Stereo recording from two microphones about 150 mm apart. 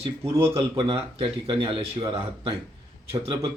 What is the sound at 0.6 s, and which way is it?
Speech, 40° right (ahead or behind).